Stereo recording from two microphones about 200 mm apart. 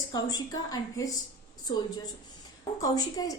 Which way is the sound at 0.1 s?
20° left (ahead or behind).